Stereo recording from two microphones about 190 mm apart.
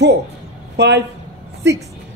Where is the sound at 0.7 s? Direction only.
70° right (ahead or behind).